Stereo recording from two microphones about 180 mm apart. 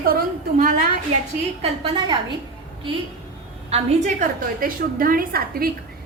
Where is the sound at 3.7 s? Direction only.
45° right (ahead or behind).